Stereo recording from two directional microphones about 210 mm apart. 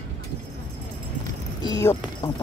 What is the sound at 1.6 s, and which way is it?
Speech, 15° left (ahead or behind).